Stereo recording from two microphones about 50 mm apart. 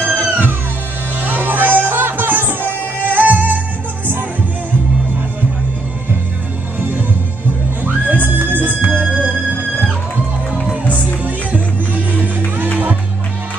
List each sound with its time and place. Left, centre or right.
0.0 s music: left
1.2 s music: right
6.8 s music: right
11.2 s music: right